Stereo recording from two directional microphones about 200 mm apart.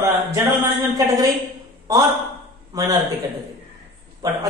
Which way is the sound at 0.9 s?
20° right (ahead or behind).